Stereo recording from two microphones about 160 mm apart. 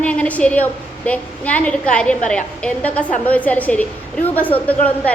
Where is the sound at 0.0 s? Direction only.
10° left (ahead or behind).